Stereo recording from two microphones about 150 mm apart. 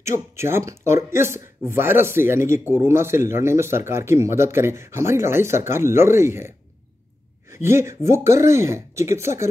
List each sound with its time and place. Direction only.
0.0 s a man's voice: 20° right (ahead or behind)